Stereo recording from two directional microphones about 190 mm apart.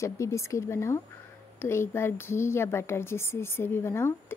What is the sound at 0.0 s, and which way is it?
Speech, 15° left (ahead or behind).